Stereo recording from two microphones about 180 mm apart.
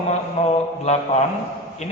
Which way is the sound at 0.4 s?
35° left (ahead or behind).